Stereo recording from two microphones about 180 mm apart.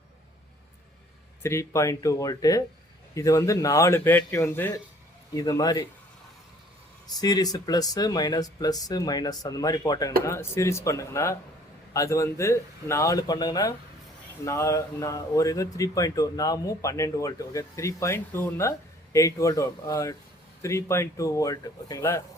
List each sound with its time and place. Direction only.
1.4 s speech: 15° left (ahead or behind)
7.2 s speech: 20° left (ahead or behind)